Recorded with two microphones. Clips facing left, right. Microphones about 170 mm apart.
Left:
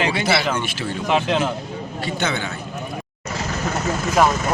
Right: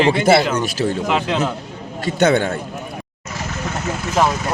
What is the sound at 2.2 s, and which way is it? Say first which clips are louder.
Speech: right 11 dB; 55° right (ahead or behind).